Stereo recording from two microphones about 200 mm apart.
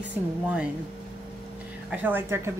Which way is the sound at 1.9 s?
10° right (ahead or behind).